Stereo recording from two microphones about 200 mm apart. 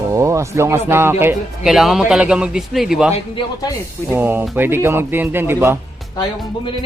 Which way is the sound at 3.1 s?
25° left (ahead or behind).